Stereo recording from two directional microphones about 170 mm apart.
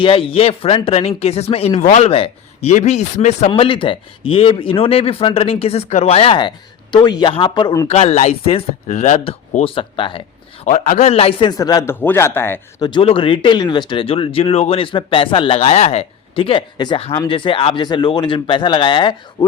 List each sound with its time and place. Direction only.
0.0 s speech: 30° left (ahead or behind)
3.5 s a man's voice: 30° left (ahead or behind)
7.9 s a man's voice: 40° left (ahead or behind); by 12.5 s 15° left (ahead or behind)
12.8 s a man's voice: 30° left (ahead or behind)